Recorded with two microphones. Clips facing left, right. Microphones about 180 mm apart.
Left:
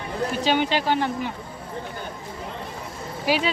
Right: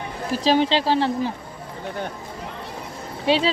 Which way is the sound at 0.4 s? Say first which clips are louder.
Right 4 dB; 30° right (ahead or behind).